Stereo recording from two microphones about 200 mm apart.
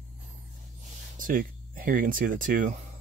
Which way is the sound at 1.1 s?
45° right (ahead or behind).